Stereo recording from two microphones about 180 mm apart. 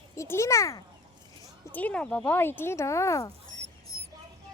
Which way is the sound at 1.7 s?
5° left (ahead or behind).